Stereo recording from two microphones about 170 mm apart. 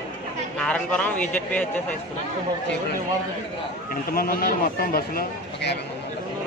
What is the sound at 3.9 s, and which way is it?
Speech, 60° left (ahead or behind).